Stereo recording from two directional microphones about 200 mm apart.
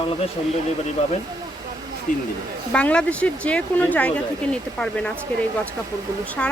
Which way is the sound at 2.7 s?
5° left (ahead or behind).